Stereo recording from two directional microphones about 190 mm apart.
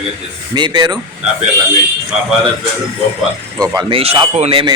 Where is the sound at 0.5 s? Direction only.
25° right (ahead or behind).